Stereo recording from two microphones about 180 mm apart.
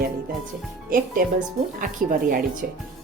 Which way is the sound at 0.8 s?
50° right (ahead or behind).